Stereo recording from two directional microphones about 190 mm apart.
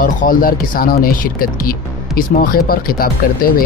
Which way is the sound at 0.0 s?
45° left (ahead or behind).